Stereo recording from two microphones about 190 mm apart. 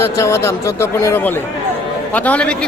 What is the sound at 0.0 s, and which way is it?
A man's voice, 15° left (ahead or behind).